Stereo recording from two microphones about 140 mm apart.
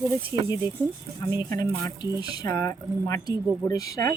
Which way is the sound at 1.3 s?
30° left (ahead or behind).